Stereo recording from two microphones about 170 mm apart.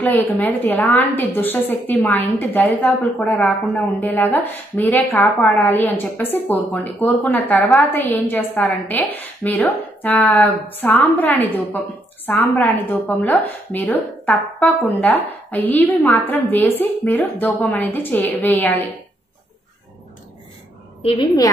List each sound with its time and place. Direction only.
0.0 s a woman's voice: 10° left (ahead or behind)
21.0 s a woman's voice: 35° left (ahead or behind)